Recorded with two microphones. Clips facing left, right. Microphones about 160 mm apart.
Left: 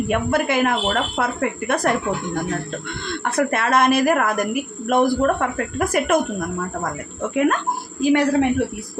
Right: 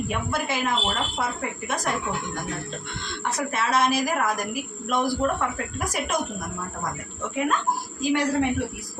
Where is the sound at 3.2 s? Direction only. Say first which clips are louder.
Left 6 dB; 60° left (ahead or behind).